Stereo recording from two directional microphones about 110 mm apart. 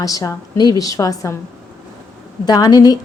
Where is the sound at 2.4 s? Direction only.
35° left (ahead or behind).